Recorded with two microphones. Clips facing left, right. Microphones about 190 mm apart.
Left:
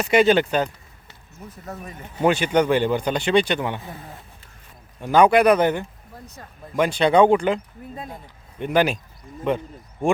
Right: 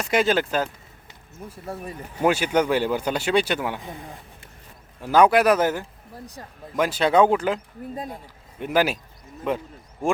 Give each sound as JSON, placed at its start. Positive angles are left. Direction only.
{"t": 0.0, "sound": "speech", "side_deg": 0}
{"t": 3.8, "sound": "speech", "side_deg": -15}
{"t": 4.9, "sound": "a man's voice", "side_deg": -5}